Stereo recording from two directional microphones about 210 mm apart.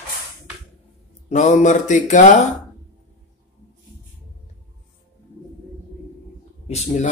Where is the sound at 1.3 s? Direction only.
35° left (ahead or behind).